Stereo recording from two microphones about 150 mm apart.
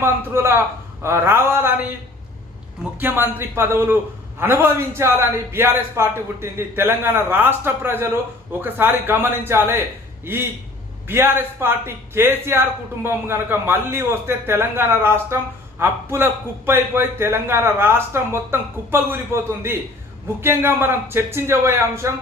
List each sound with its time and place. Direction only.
0.0 s a man's voice: 15° right (ahead or behind)
3.0 s speech: 15° right (ahead or behind)
11.1 s speech: 15° right (ahead or behind)